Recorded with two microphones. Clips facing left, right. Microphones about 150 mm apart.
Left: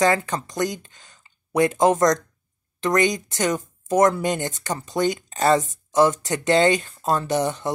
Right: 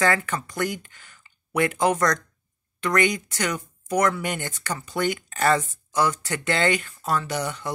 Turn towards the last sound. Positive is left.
turn(degrees=25)  # may be behind; listen again after turning